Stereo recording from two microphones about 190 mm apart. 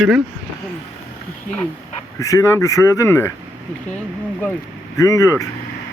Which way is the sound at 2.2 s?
15° left (ahead or behind).